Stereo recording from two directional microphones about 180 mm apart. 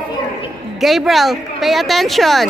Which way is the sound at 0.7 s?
Centre (ahead or behind).